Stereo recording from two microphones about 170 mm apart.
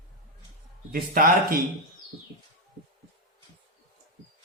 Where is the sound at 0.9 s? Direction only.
60° right (ahead or behind).